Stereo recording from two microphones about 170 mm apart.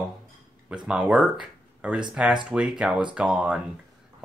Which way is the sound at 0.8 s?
5° right (ahead or behind).